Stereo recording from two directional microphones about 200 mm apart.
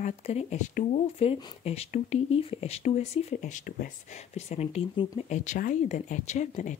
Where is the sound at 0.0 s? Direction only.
35° left (ahead or behind).